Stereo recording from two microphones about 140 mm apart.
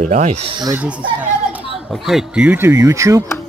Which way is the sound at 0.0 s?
60° right (ahead or behind).